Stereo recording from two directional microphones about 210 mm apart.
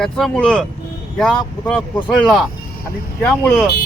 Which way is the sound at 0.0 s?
Centre (ahead or behind).